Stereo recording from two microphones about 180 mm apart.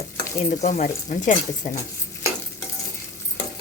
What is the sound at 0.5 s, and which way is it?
Speech, 40° left (ahead or behind).